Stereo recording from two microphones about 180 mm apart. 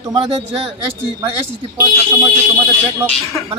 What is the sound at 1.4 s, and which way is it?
Speech, 15° right (ahead or behind).